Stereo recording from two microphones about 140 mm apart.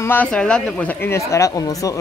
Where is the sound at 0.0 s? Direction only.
15° left (ahead or behind).